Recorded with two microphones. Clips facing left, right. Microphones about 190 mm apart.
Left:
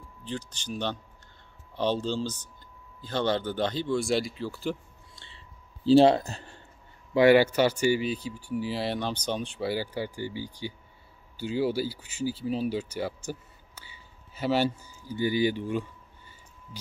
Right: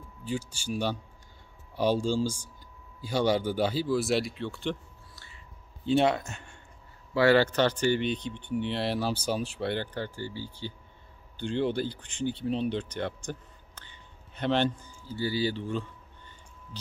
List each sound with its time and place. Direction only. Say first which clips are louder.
0.2 s speech: right 3 dB; 10° right (ahead or behind)
5.1 s a sound: even; 25° left (ahead or behind)
5.9 s speech: left 6 dB; 30° left (ahead or behind)
7.2 s speech: left 3 dB; 15° left (ahead or behind)